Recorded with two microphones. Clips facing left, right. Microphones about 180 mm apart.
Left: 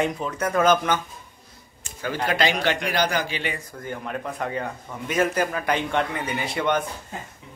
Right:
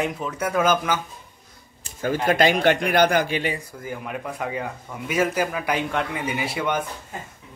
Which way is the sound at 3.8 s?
5° right (ahead or behind).